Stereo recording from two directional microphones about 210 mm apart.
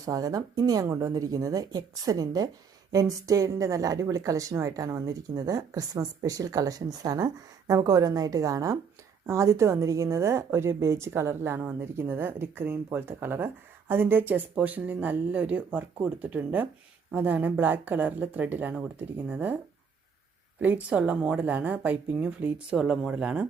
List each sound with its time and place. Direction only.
0.0 s a woman's voice: 15° right (ahead or behind)
20.6 s a woman's voice: 10° right (ahead or behind)